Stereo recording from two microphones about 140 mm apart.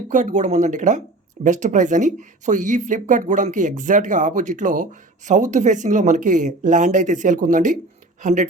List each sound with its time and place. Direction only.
0.1 s speech: 60° right (ahead or behind)